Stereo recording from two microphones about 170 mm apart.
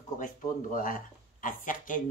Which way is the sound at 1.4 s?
50° left (ahead or behind).